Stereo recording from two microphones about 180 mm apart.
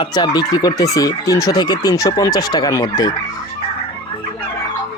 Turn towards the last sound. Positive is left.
turn(degrees=20)  # may be behind; listen again after turning